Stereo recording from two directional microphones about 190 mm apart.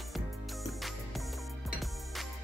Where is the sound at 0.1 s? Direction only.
Centre (ahead or behind).